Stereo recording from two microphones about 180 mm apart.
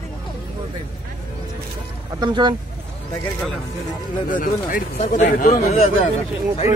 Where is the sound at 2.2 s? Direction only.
25° right (ahead or behind).